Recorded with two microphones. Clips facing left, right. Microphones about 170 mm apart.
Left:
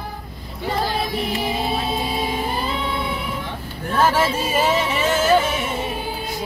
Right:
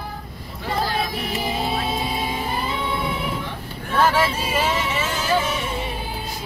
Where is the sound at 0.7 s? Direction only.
Centre (ahead or behind).